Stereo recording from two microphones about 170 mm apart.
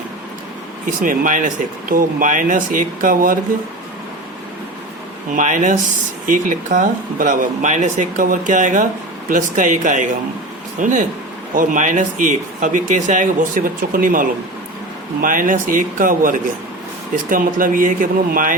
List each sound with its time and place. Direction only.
0.9 s speech: 50° right (ahead or behind)
5.3 s speech: 50° right (ahead or behind)